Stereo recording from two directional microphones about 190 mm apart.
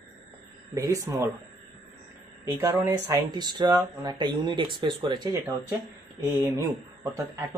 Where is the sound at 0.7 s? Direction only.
15° right (ahead or behind).